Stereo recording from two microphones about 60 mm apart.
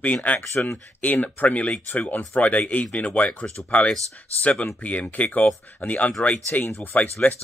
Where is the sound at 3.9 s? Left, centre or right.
Right.